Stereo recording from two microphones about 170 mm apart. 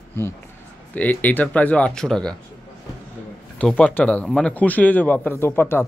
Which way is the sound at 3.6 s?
5° left (ahead or behind).